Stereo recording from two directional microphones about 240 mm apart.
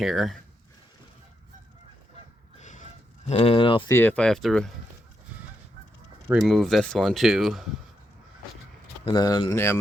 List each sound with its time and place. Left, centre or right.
0.0 s speech: centre
2.6 s a sound: left
3.2 s speech: left
3.9 s speech: centre
6.2 s speech: centre
9.0 s speech: centre